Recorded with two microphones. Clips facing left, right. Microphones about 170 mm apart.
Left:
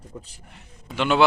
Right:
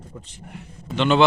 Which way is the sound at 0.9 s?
10° left (ahead or behind).